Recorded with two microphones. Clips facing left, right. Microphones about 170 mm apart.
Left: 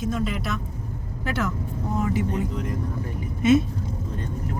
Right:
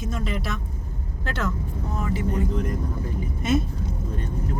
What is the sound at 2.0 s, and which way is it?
Vehicle, 15° left (ahead or behind).